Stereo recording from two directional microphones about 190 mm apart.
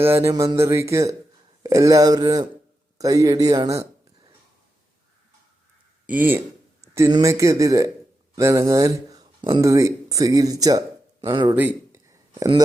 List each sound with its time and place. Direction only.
0.0 s speech: 15° right (ahead or behind)
6.1 s speech: 10° right (ahead or behind)
11.5 s a sound: 10° right (ahead or behind)